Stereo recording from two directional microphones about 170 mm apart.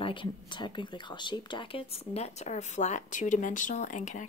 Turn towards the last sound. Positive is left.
turn(degrees=45)  # may be behind; listen again after turning